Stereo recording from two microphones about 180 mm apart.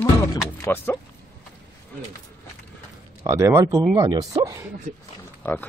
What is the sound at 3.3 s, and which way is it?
Speech, 15° right (ahead or behind).